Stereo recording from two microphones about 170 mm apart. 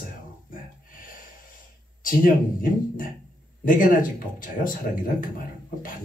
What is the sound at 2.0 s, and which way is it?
Speech, 55° left (ahead or behind).